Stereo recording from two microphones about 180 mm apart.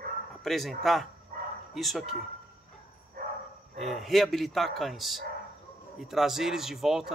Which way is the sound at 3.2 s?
55° right (ahead or behind).